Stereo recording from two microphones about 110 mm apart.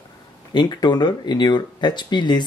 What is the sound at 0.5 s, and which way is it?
Speech, 40° left (ahead or behind).